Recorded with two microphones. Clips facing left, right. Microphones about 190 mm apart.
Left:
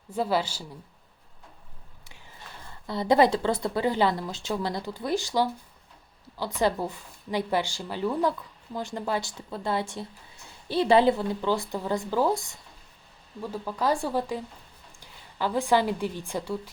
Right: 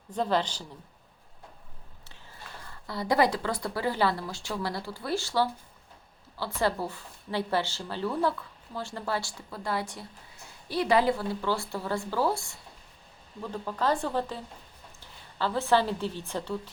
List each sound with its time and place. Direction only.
0.1 s a woman's voice: 10° left (ahead or behind)
2.8 s speech: 20° left (ahead or behind)
6.6 s a woman's voice: 15° left (ahead or behind)